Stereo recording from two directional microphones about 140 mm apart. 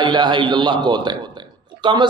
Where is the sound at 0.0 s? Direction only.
35° right (ahead or behind).